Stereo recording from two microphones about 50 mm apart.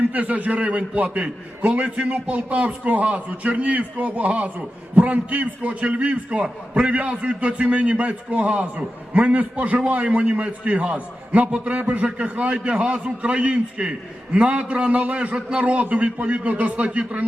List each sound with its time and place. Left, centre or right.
0.1 s a man's voice: right